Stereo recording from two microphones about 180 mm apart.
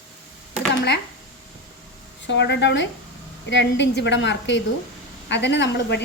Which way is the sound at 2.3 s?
75° left (ahead or behind).